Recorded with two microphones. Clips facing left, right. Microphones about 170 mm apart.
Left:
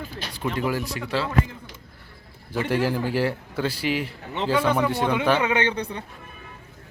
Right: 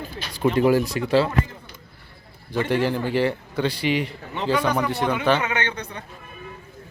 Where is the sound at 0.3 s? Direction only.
35° right (ahead or behind).